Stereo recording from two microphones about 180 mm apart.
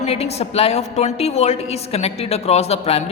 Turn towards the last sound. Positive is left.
turn(degrees=35)  # may be behind; listen again after turning